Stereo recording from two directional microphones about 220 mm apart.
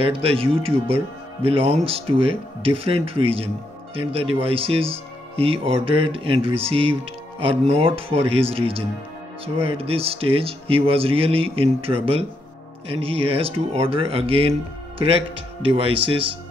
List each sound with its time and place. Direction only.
0.0 s speech: 25° right (ahead or behind)